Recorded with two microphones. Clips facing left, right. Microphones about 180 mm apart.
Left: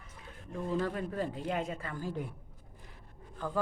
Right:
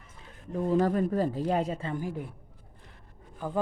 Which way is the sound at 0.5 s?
40° right (ahead or behind).